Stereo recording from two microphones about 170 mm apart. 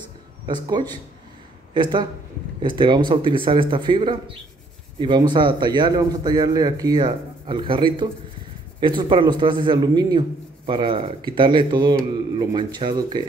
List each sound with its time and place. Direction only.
0.5 s a man's voice: 25° right (ahead or behind)